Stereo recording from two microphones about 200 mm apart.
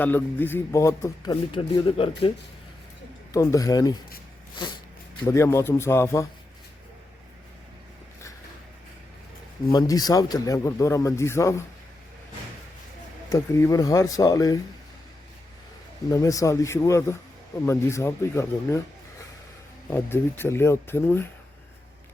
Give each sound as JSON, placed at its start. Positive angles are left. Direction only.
{"t": 0.0, "sound": "speech", "side_deg": 10}
{"t": 3.3, "sound": "speech", "side_deg": 15}
{"t": 9.7, "sound": "speech", "side_deg": 20}
{"t": 13.3, "sound": "speech", "side_deg": 15}
{"t": 16.0, "sound": "speech", "side_deg": 15}
{"t": 19.9, "sound": "speech", "side_deg": 10}